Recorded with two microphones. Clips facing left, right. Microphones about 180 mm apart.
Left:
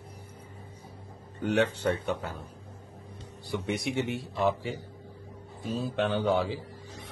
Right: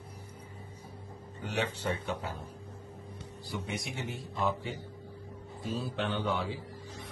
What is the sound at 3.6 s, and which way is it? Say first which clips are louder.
A man's voice: left 11 dB; 70° left (ahead or behind).